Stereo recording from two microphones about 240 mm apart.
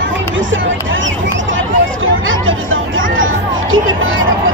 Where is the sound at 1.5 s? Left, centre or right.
Right.